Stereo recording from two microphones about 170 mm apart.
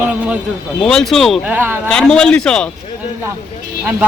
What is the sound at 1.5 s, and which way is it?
Speech, 10° right (ahead or behind).